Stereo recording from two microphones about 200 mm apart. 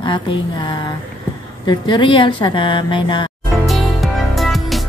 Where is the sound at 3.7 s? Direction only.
Centre (ahead or behind).